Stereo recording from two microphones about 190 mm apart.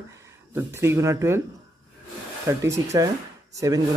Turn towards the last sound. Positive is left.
turn(degrees=-15)  # may be behind; listen again after turning